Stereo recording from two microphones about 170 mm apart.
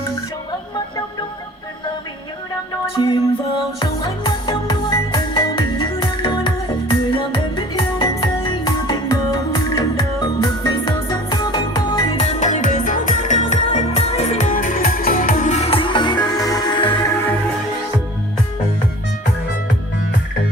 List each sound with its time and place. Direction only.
3.0 s music: 30° left (ahead or behind)
12.2 s music: 45° left (ahead or behind)